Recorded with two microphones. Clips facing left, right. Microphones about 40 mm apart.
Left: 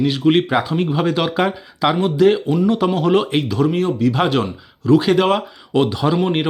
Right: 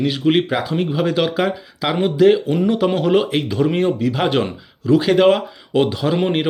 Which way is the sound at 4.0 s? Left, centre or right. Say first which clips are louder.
Left 1 dB; centre.